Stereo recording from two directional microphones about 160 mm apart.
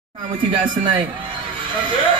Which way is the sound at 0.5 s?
30° right (ahead or behind).